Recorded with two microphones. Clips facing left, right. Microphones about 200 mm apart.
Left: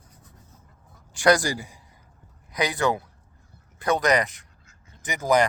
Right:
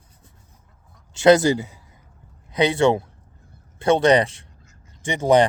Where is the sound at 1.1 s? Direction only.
25° right (ahead or behind).